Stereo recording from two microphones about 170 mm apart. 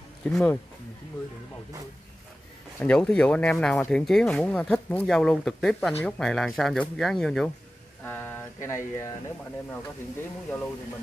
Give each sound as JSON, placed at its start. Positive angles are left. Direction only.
{"t": 0.2, "sound": "speech", "side_deg": 5}
{"t": 2.8, "sound": "speech", "side_deg": 5}
{"t": 8.0, "sound": "a sound", "side_deg": 10}
{"t": 8.6, "sound": "speech", "side_deg": 15}